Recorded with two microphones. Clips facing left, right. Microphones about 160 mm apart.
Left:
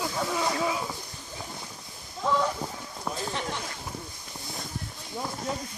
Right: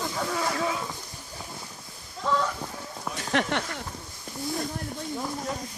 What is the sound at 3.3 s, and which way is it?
Speech, 75° right (ahead or behind).